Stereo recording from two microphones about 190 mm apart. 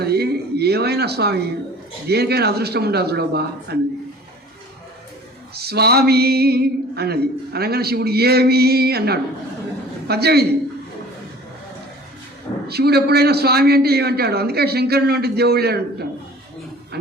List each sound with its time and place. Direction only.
0.0 s a sound: 55° right (ahead or behind)
2.0 s speech: 55° right (ahead or behind)
5.5 s speech: 55° right (ahead or behind)
12.6 s speech: 55° right (ahead or behind)